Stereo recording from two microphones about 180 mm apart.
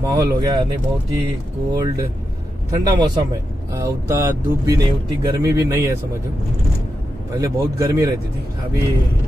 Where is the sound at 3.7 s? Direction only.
15° right (ahead or behind).